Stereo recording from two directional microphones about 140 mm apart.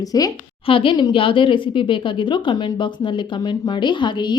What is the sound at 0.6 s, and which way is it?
Speech, 40° left (ahead or behind).